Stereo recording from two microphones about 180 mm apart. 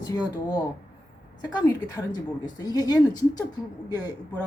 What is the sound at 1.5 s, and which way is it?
Speech, 20° left (ahead or behind).